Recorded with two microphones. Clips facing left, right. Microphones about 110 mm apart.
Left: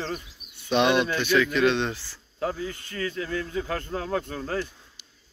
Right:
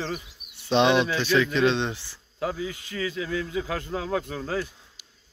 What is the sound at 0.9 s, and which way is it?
Speech, centre (ahead or behind).